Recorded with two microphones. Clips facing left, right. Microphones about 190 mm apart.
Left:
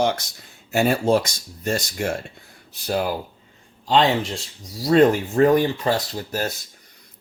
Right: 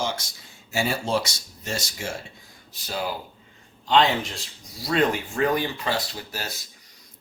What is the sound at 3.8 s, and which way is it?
A man's voice, 35° left (ahead or behind).